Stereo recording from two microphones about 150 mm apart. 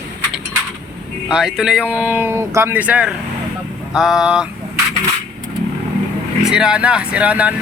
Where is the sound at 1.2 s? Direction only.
5° right (ahead or behind).